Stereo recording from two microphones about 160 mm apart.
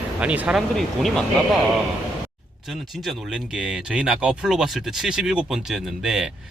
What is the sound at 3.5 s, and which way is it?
Speech, 5° right (ahead or behind).